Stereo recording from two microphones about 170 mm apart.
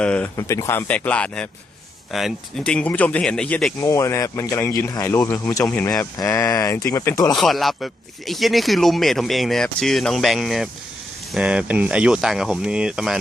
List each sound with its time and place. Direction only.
0.0 s speech: 5° left (ahead or behind)
0.3 s speech: 20° left (ahead or behind)
3.8 s speech: 20° left (ahead or behind)
5.6 s speech: 5° left (ahead or behind)
7.3 s speech: centre (ahead or behind)